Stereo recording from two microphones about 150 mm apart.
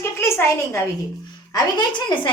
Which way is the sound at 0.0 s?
15° left (ahead or behind).